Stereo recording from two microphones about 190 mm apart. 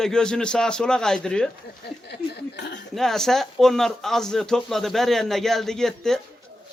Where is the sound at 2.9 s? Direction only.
Centre (ahead or behind).